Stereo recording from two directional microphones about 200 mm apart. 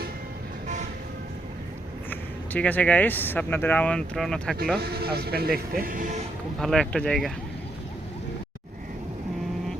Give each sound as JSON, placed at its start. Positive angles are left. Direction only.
{"t": 2.0, "sound": "speech", "side_deg": 10}
{"t": 4.8, "sound": "speech", "side_deg": -50}
{"t": 6.6, "sound": "speech", "side_deg": 5}